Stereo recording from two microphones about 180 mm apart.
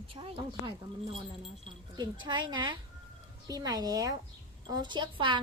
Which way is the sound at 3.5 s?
20° right (ahead or behind).